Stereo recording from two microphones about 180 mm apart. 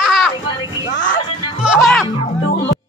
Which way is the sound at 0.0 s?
Centre (ahead or behind).